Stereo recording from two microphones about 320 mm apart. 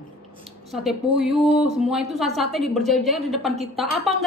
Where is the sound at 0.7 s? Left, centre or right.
Centre.